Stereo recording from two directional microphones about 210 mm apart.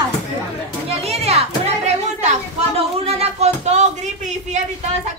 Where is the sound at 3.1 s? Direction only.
30° right (ahead or behind).